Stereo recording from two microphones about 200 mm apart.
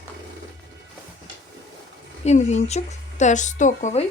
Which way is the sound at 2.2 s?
35° left (ahead or behind).